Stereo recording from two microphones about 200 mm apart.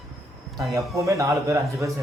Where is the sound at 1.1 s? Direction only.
15° right (ahead or behind).